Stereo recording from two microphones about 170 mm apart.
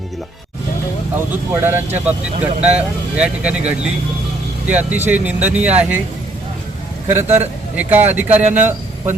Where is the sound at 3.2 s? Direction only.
5° right (ahead or behind).